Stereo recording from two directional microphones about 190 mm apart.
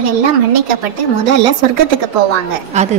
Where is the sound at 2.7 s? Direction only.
40° right (ahead or behind).